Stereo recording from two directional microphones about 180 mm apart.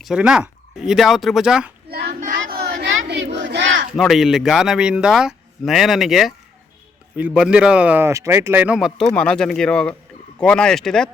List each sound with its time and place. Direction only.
0.0 s speech: 5° right (ahead or behind)
1.9 s child singing: 55° right (ahead or behind); by 3.2 s 90° right
3.3 s battle cry: 85° right
3.9 s speech: centre (ahead or behind)